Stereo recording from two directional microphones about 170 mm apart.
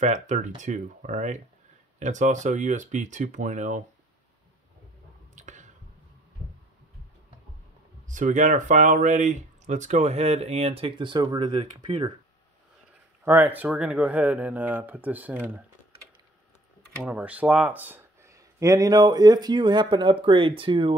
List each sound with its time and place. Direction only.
0.0 s speech: 45° right (ahead or behind)
5.3 s squish: 45° right (ahead or behind)
8.1 s speech: 45° right (ahead or behind); by 12.1 s 30° right (ahead or behind)
13.2 s speech: 10° right (ahead or behind)
17.0 s speech: 10° right (ahead or behind); by 20.9 s 30° right (ahead or behind)